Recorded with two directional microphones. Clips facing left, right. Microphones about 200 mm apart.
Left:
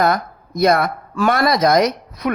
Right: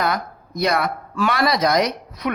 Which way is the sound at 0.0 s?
50° left (ahead or behind).